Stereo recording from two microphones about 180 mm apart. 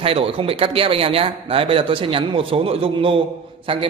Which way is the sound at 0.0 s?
30° right (ahead or behind).